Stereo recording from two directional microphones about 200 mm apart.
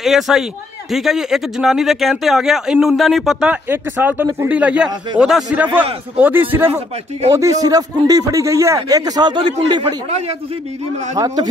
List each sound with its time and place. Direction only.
0.0 s a man's voice: centre (ahead or behind); by 10.3 s 30° right (ahead or behind)
11.1 s a man's voice: 15° right (ahead or behind)